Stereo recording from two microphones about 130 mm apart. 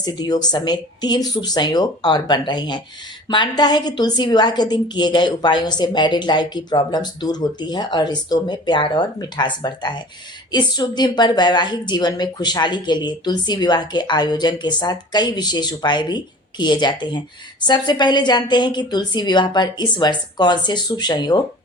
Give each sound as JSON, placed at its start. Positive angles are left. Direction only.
{"t": 0.0, "sound": "a woman's voice", "side_deg": 30}